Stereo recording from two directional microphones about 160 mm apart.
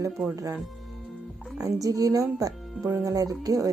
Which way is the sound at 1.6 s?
20° right (ahead or behind).